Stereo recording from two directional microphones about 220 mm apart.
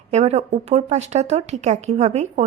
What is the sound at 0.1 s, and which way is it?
A woman's voice, 30° right (ahead or behind).